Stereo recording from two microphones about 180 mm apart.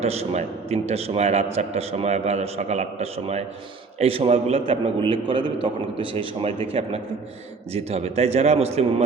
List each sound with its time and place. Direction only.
0.0 s a man's voice: 35° right (ahead or behind)
7.7 s a man's voice: 35° right (ahead or behind)